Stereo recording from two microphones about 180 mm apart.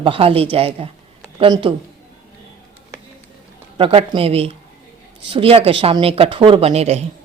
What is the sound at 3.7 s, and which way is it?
Speech, 30° right (ahead or behind).